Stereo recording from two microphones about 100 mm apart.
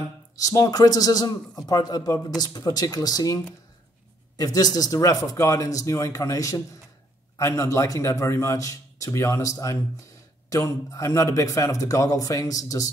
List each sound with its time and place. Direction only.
0.4 s a man's voice: 35° left (ahead or behind)
4.4 s a man's voice: 40° left (ahead or behind)